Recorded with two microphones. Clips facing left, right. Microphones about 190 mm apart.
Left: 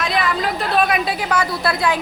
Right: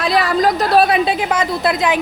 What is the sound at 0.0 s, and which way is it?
A woman's voice, 35° right (ahead or behind).